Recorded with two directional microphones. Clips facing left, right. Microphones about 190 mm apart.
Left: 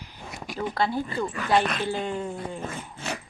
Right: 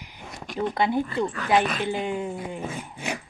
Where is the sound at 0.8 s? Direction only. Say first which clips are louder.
Right 2 dB; 20° right (ahead or behind).